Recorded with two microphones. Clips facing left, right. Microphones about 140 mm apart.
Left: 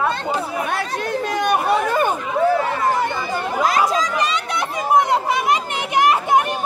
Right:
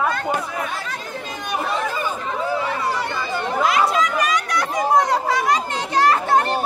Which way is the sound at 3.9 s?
35° left (ahead or behind).